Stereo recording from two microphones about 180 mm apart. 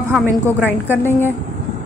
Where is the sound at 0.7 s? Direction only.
10° left (ahead or behind).